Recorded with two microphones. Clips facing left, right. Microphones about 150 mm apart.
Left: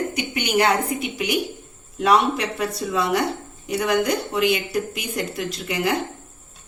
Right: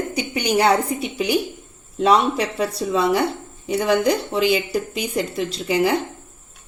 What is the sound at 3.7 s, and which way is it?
Speech, 30° right (ahead or behind).